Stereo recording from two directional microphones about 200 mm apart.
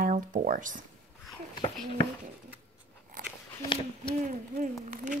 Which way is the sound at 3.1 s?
45° right (ahead or behind).